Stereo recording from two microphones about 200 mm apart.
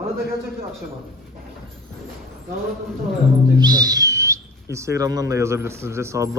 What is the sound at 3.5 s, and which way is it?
Speech, 20° right (ahead or behind).